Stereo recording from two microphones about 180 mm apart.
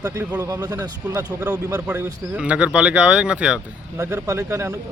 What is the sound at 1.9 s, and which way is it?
Speech, 5° right (ahead or behind).